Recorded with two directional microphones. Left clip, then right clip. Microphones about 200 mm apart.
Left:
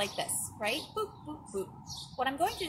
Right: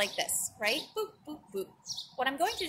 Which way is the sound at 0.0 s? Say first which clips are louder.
Right 2 dB; centre (ahead or behind).